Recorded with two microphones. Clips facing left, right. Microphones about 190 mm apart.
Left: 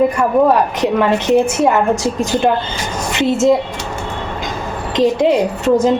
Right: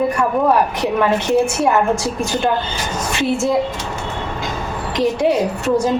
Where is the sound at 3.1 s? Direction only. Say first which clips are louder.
Left 3 dB; 20° left (ahead or behind).